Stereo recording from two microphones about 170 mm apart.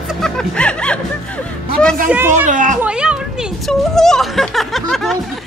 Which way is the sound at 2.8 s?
5° right (ahead or behind).